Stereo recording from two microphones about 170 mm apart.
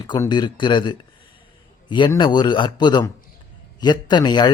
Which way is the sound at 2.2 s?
25° left (ahead or behind).